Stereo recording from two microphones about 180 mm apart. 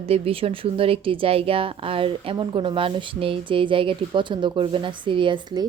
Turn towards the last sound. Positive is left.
turn(degrees=-25)  # may be behind; listen again after turning